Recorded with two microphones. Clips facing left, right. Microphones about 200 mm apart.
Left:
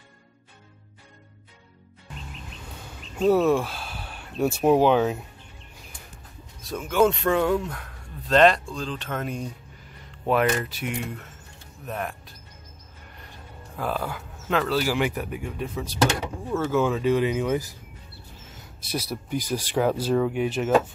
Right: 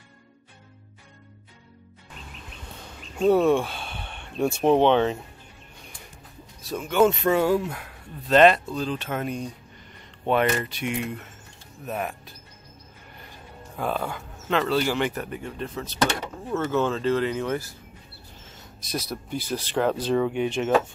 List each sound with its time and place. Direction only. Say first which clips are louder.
3.2 s speech: right 1 dB; centre (ahead or behind)
6.7 s speech: right 1 dB; centre (ahead or behind)
13.7 s speech: right 1 dB; centre (ahead or behind)
18.9 s speech: left 1 dB; 10° left (ahead or behind)